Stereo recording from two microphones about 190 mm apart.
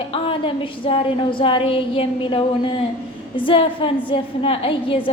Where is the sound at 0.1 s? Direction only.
30° left (ahead or behind).